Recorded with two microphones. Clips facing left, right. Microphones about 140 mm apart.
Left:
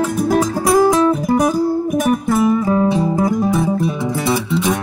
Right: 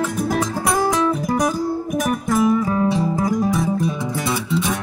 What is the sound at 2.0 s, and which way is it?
Music, 30° left (ahead or behind).